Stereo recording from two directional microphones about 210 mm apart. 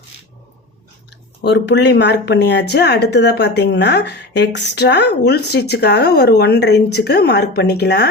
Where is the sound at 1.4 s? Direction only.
55° left (ahead or behind).